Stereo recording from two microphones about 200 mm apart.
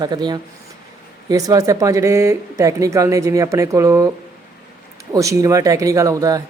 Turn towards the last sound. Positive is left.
turn(degrees=-15)  # may be behind; listen again after turning